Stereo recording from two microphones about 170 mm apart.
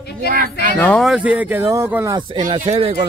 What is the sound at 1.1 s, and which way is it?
Speech, 10° right (ahead or behind).